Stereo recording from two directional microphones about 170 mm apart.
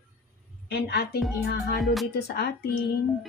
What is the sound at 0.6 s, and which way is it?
A woman's voice, 75° left (ahead or behind).